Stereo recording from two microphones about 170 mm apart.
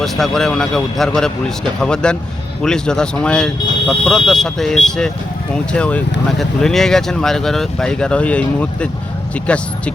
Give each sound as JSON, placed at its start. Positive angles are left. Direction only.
{"t": 0.0, "sound": "speech", "side_deg": 0}